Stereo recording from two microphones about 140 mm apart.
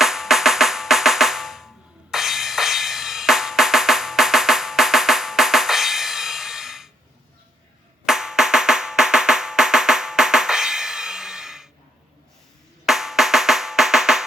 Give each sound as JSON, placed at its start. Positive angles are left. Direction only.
{"t": 0.0, "sound": "drum", "side_deg": 0}
{"t": 8.0, "sound": "drum", "side_deg": -5}
{"t": 12.8, "sound": "drum", "side_deg": 0}